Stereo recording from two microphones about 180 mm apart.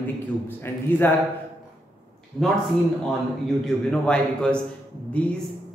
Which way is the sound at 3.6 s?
5° left (ahead or behind).